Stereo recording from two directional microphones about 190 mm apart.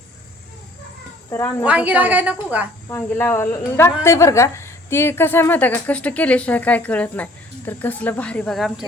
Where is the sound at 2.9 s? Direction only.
10° left (ahead or behind).